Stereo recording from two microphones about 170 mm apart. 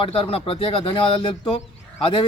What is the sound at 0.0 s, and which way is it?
Speech, 35° left (ahead or behind).